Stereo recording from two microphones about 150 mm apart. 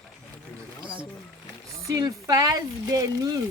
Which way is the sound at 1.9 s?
25° right (ahead or behind).